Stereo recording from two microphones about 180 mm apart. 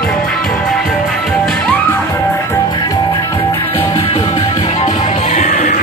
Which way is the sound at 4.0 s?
30° left (ahead or behind).